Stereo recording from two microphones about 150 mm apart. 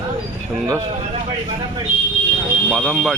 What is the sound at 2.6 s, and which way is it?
Speech, 5° left (ahead or behind).